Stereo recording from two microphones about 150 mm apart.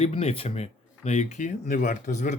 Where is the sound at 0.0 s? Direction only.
40° left (ahead or behind).